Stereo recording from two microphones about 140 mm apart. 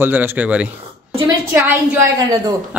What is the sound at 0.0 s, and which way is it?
Speech, 15° right (ahead or behind).